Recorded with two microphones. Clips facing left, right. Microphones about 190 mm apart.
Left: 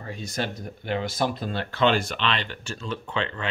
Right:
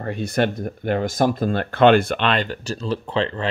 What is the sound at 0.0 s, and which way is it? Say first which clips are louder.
Speech: right 9 dB; 60° right (ahead or behind).